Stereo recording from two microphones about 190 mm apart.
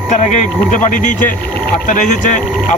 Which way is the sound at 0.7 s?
40° left (ahead or behind).